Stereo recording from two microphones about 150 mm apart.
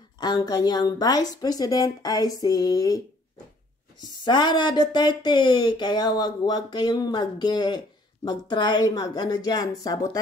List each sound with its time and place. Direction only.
0.2 s speech: 30° left (ahead or behind)
4.0 s speech: 30° left (ahead or behind)